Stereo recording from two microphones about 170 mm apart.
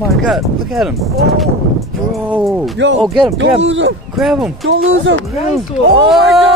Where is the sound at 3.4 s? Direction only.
90° right.